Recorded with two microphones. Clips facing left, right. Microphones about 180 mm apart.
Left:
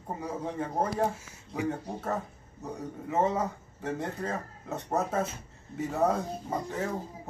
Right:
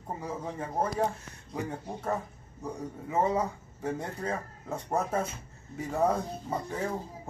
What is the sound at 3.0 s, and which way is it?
Speech, 10° right (ahead or behind).